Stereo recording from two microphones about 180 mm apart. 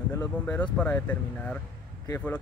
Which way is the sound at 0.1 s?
10° left (ahead or behind).